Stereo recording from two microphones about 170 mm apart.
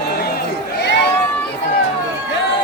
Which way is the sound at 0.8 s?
90° left.